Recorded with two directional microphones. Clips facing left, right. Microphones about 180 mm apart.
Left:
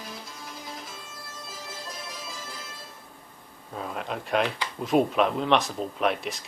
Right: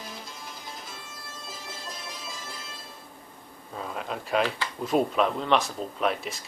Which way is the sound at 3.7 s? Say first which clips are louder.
Left 1 dB; centre (ahead or behind).